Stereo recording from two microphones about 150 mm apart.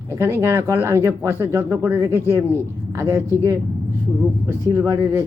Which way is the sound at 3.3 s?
15° left (ahead or behind).